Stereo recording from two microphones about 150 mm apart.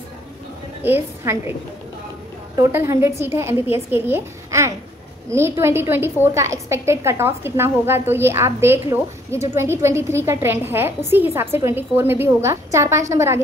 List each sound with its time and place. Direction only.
0.8 s a woman's voice: 15° right (ahead or behind)
2.5 s a woman's voice: 20° right (ahead or behind)